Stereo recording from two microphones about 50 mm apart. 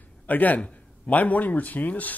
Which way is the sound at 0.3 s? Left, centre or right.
Left.